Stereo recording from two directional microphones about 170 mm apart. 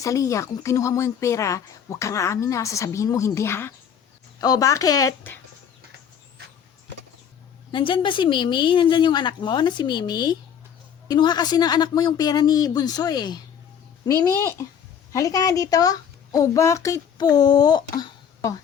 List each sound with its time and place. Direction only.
0.0 s a woman's voice: 20° left (ahead or behind)
7.7 s a woman's voice: 30° left (ahead or behind)